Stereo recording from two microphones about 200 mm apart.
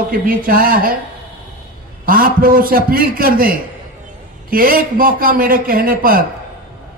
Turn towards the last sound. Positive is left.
turn(degrees=-45)  # may be behind; listen again after turning